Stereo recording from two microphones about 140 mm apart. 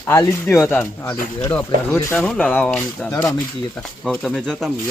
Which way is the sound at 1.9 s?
10° left (ahead or behind).